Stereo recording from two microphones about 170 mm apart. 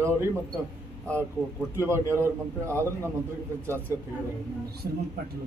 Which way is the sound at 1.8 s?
15° right (ahead or behind).